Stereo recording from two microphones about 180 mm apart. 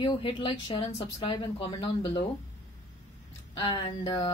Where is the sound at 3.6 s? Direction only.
25° left (ahead or behind).